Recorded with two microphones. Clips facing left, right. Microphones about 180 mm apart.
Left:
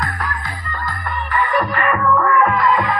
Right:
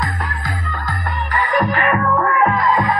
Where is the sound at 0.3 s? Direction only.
40° right (ahead or behind).